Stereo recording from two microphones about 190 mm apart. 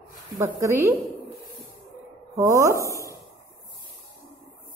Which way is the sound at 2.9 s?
15° left (ahead or behind).